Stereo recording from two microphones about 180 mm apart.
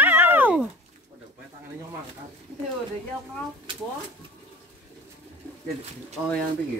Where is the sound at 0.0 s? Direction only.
10° right (ahead or behind).